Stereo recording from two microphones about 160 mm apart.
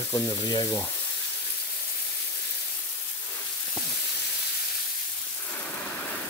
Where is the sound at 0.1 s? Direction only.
25° left (ahead or behind).